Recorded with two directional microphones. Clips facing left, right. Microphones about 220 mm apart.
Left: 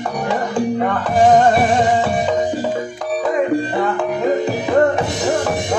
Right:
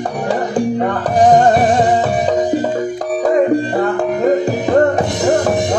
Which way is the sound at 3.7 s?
40° right (ahead or behind).